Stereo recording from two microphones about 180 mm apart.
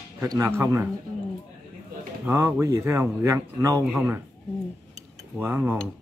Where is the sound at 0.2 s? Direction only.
15° right (ahead or behind).